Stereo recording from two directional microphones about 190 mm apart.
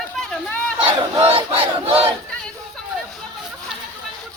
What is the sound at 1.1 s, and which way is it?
Battle cry, 30° right (ahead or behind).